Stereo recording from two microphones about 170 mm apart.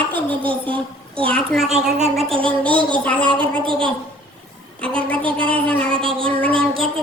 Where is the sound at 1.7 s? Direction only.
40° right (ahead or behind).